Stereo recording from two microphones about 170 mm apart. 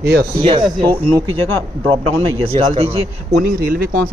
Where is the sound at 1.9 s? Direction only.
35° right (ahead or behind).